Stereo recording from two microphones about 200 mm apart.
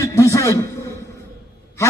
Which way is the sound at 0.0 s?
15° left (ahead or behind).